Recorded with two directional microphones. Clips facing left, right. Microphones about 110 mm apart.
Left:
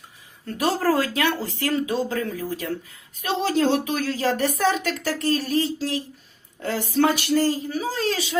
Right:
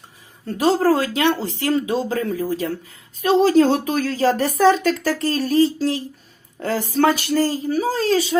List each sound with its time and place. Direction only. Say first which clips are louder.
0.4 s a woman's voice: right 5 dB; 25° right (ahead or behind)